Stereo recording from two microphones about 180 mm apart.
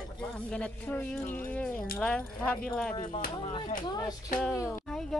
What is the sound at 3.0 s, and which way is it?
Speech, 45° left (ahead or behind).